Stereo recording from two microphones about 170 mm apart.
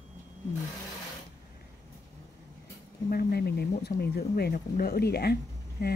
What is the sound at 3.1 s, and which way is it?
Speech, 70° left (ahead or behind).